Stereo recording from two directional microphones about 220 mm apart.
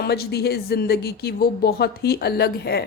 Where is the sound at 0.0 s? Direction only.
45° left (ahead or behind).